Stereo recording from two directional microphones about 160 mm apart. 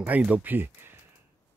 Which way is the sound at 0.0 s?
10° right (ahead or behind).